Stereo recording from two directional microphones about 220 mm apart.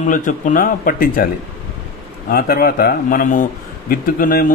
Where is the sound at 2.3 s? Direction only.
45° left (ahead or behind).